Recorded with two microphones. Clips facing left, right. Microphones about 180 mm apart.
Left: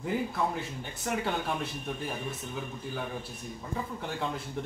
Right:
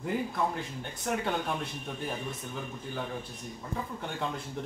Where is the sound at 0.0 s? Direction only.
Centre (ahead or behind).